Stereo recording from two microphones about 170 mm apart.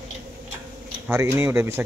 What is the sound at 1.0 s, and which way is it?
Speech, 15° right (ahead or behind).